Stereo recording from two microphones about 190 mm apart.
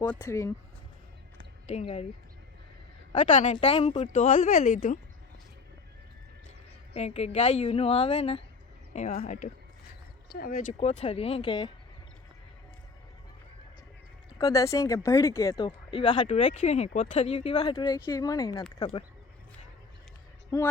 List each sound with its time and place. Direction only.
0.0 s speech: 10° left (ahead or behind)
1.6 s speech: 30° left (ahead or behind)
3.3 s speech: 35° left (ahead or behind)
6.9 s speech: 35° left (ahead or behind)
10.2 s speech: 55° left (ahead or behind)
10.8 s speech: 35° left (ahead or behind)
14.3 s speech: 20° left (ahead or behind)
20.5 s speech: 15° left (ahead or behind)